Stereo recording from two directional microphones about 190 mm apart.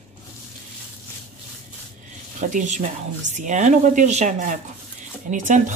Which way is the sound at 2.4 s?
40° right (ahead or behind).